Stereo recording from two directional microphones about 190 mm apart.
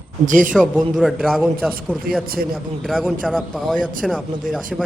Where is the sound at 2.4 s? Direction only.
50° right (ahead or behind).